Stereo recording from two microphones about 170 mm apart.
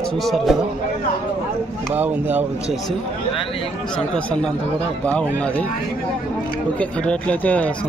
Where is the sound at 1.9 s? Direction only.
10° right (ahead or behind).